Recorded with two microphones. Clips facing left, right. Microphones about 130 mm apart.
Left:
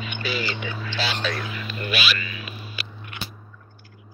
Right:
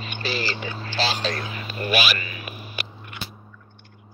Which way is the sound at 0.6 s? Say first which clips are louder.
Right 2 dB; 40° right (ahead or behind).